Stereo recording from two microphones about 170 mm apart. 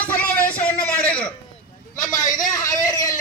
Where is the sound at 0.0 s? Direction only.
10° left (ahead or behind).